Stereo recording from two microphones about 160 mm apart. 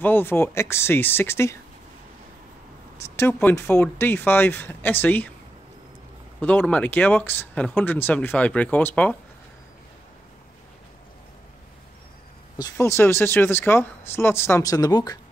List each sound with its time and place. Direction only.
0.0 s speech: 15° left (ahead or behind)
3.0 s speech: 15° left (ahead or behind)
6.7 s speech: 10° left (ahead or behind)
12.5 s speech: 20° left (ahead or behind)